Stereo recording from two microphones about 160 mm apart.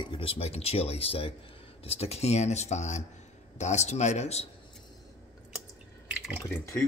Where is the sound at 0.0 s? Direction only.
35° left (ahead or behind).